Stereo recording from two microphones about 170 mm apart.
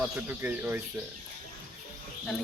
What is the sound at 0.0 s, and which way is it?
Speech, 10° right (ahead or behind).